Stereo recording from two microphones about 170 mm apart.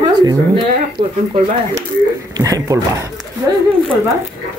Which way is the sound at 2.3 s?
20° right (ahead or behind).